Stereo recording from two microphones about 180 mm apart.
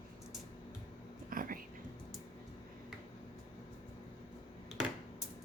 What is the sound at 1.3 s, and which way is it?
Whispering, 50° right (ahead or behind).